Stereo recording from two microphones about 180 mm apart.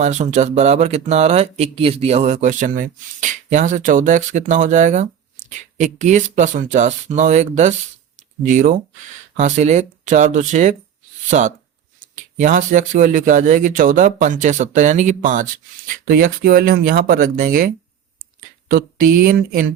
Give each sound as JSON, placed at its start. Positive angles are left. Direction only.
{"t": 0.0, "sound": "speech", "side_deg": -40}
{"t": 18.7, "sound": "speech", "side_deg": -55}